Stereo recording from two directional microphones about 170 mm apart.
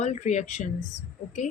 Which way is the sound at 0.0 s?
45° left (ahead or behind).